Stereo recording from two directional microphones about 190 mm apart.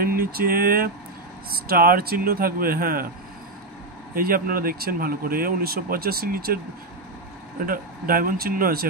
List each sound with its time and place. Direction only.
0.0 s speech: 50° right (ahead or behind)
4.1 s speech: 50° right (ahead or behind)
7.6 s speech: 50° right (ahead or behind)